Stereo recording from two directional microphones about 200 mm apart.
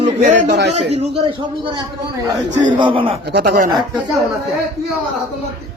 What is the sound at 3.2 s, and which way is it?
Speech, 55° right (ahead or behind).